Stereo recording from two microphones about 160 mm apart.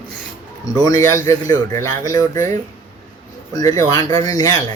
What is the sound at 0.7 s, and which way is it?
A man's voice, 20° left (ahead or behind).